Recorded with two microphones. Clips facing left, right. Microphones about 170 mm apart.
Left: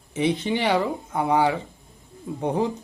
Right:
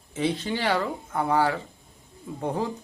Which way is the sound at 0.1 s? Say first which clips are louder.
Left 4 dB; 20° left (ahead or behind).